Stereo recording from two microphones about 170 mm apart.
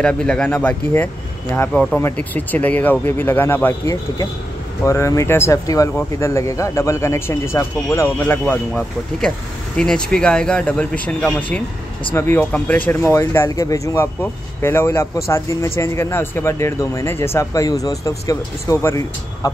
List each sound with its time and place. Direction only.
0.0 s speech: 5° left (ahead or behind)